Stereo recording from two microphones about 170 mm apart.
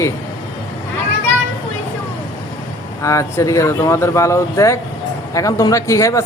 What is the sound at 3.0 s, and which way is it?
Speech, 20° left (ahead or behind).